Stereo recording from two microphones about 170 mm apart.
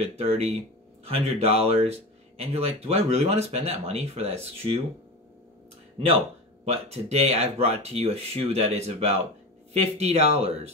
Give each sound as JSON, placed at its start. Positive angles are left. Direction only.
{"t": 0.0, "sound": "speech", "side_deg": -40}
{"t": 6.6, "sound": "speech", "side_deg": -40}